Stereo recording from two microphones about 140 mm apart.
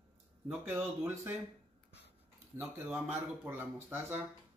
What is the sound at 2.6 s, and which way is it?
Speech, 15° right (ahead or behind).